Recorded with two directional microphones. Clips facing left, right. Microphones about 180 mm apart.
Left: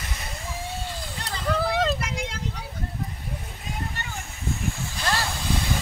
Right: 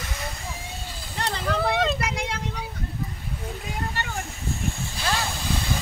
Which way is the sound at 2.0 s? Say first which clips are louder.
Right 3 dB; 65° right (ahead or behind).